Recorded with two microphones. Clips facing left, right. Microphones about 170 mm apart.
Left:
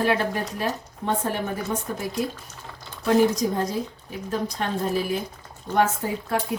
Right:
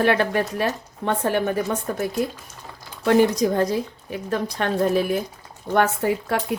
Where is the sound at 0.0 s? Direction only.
65° right (ahead or behind).